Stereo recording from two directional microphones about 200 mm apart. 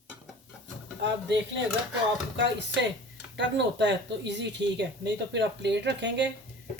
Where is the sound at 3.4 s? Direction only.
60° right (ahead or behind).